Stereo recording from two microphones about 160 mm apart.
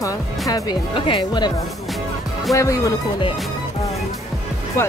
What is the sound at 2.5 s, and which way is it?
Speech, 20° left (ahead or behind).